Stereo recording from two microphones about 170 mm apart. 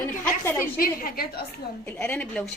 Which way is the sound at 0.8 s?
60° left (ahead or behind).